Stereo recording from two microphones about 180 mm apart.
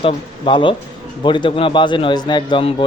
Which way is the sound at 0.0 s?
25° left (ahead or behind).